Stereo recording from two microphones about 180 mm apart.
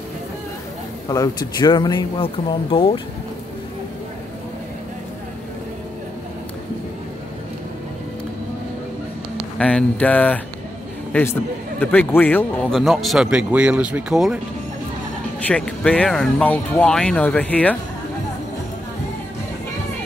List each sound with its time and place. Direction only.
1.0 s speech: 20° left (ahead or behind)
9.6 s a man's voice: 5° left (ahead or behind)
12.8 s speech: centre (ahead or behind)
15.4 s speech: 5° left (ahead or behind)